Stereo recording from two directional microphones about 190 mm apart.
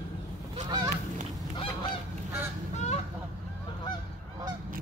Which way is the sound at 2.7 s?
35° left (ahead or behind).